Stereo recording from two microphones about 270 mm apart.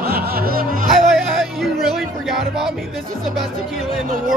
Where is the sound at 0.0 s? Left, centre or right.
Right.